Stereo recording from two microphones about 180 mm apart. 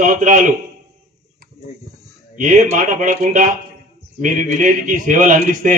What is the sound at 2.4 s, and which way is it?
A man's voice, 45° right (ahead or behind).